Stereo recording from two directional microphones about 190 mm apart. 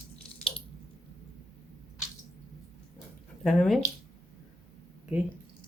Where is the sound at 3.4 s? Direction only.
Centre (ahead or behind).